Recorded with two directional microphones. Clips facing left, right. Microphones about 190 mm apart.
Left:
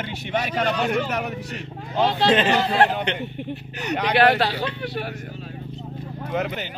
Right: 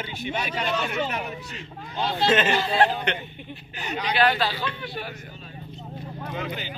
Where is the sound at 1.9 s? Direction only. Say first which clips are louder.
Left 5 dB; 90° left.